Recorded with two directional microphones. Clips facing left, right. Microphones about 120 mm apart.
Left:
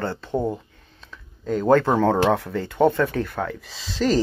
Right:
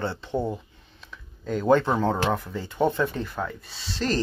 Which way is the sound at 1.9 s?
80° left.